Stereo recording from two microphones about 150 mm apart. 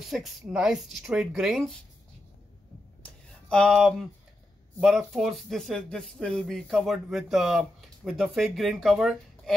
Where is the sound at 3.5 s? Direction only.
5° left (ahead or behind).